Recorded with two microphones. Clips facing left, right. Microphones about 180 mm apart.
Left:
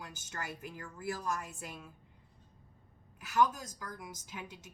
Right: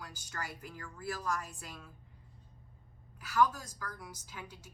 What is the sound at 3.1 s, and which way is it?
A woman's voice, 20° left (ahead or behind).